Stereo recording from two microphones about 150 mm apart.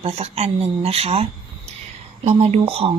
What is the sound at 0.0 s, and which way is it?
Speech, 45° right (ahead or behind).